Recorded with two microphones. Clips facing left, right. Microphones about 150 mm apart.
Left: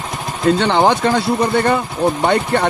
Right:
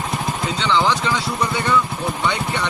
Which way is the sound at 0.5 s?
55° left (ahead or behind).